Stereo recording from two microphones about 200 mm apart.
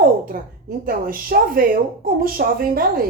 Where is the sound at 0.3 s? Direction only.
45° right (ahead or behind).